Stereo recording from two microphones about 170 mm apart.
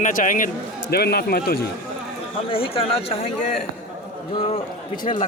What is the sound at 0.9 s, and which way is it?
Speech, 65° left (ahead or behind).